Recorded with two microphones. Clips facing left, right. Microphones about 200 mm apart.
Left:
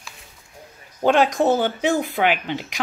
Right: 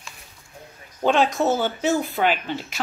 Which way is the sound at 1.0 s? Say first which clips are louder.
Left 2 dB; 10° left (ahead or behind).